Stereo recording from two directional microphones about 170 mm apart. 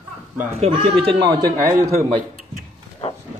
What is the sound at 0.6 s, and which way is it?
Speech, 35° right (ahead or behind).